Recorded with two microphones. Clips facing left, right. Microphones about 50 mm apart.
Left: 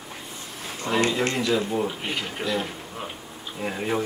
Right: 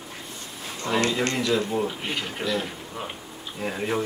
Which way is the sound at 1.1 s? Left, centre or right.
Centre.